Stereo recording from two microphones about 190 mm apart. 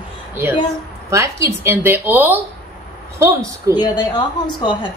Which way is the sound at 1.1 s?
15° right (ahead or behind).